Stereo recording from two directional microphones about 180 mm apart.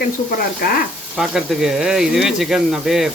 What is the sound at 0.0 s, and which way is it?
Speech, 55° left (ahead or behind).